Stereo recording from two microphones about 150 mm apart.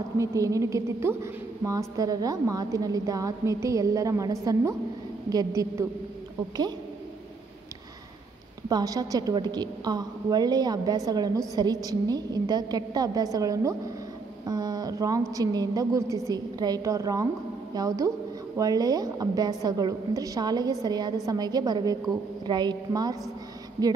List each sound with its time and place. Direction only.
0.2 s a woman's voice: 20° right (ahead or behind)
8.6 s a woman's voice: 25° right (ahead or behind)